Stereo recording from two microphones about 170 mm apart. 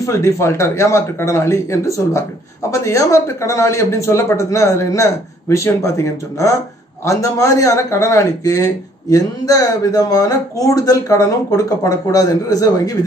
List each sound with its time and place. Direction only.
0.0 s speech: 15° left (ahead or behind)